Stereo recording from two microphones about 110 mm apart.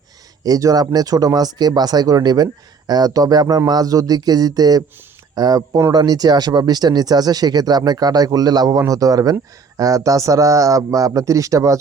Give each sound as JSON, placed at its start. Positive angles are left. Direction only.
{"t": 0.4, "sound": "speech", "side_deg": -35}